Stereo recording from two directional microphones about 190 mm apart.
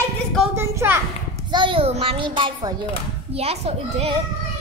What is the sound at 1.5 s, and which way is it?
A child's voice, 25° right (ahead or behind).